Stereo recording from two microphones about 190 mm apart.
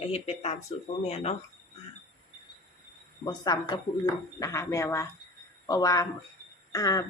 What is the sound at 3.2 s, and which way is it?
A woman's voice, 20° left (ahead or behind).